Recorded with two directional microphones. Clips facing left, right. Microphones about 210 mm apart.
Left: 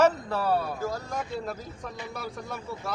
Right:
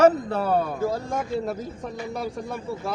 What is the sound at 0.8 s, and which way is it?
Speech, 25° right (ahead or behind).